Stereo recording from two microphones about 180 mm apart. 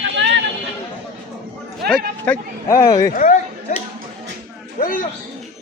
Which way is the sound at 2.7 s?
15° left (ahead or behind).